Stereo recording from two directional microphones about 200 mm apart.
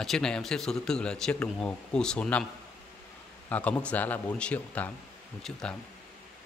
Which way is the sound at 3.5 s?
5° left (ahead or behind).